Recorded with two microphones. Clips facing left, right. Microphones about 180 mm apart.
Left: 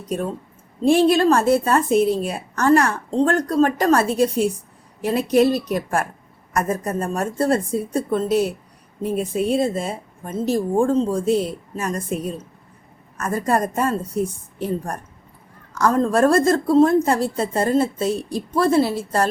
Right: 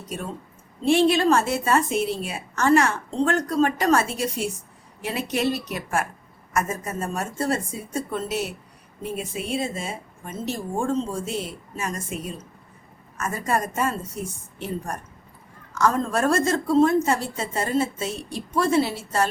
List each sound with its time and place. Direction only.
0.8 s a woman's voice: 40° left (ahead or behind)
15.7 s a woman's voice: 35° left (ahead or behind)